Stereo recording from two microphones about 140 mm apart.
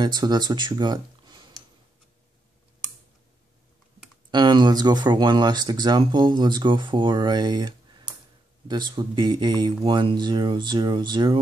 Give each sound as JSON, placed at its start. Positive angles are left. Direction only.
{"t": 0.0, "sound": "speech", "side_deg": -30}
{"t": 4.3, "sound": "speech", "side_deg": -30}